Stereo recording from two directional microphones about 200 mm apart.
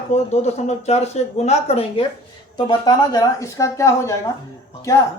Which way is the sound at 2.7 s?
20° left (ahead or behind).